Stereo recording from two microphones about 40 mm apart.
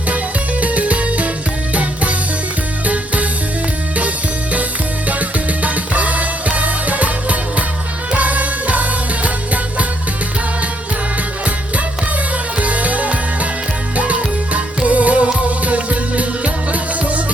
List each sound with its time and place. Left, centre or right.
0.6 s music: right
5.0 s music: right
12.5 s music: right